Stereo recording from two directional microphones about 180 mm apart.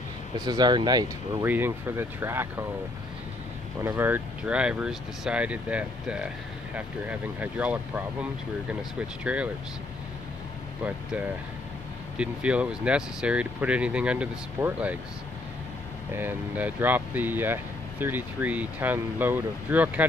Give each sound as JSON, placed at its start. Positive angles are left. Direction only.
{"t": 0.5, "sound": "speech", "side_deg": -25}
{"t": 1.4, "sound": "speech", "side_deg": -10}
{"t": 3.8, "sound": "speech", "side_deg": -10}
{"t": 12.2, "sound": "speech", "side_deg": -5}
{"t": 16.1, "sound": "speech", "side_deg": -10}